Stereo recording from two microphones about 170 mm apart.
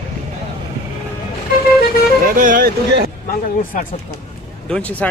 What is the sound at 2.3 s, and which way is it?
Speech, 55° right (ahead or behind).